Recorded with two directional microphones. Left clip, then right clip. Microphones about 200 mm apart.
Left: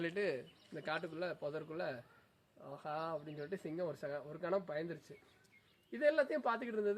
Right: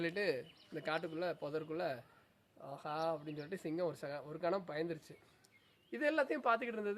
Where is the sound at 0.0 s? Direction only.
15° right (ahead or behind).